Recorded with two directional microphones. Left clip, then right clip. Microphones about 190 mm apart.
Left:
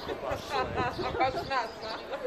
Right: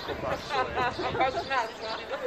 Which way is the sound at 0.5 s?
35° right (ahead or behind).